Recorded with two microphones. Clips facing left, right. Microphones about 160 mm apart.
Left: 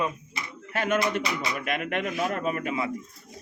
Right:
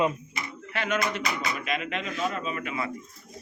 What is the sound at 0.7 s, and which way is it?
A man's voice, 50° left (ahead or behind).